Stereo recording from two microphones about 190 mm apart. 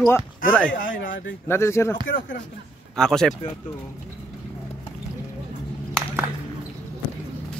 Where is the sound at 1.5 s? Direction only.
15° left (ahead or behind).